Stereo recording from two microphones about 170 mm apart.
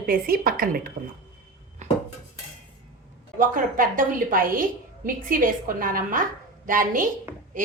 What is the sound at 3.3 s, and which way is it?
A woman's voice, 55° right (ahead or behind).